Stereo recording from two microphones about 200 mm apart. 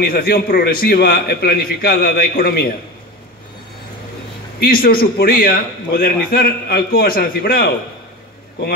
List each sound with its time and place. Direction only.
0.0 s a man's voice: 50° left (ahead or behind)
4.6 s a man's voice: 50° left (ahead or behind)